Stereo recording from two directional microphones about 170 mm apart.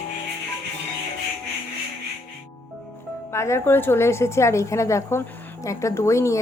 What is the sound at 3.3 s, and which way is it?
A woman's voice, 15° left (ahead or behind).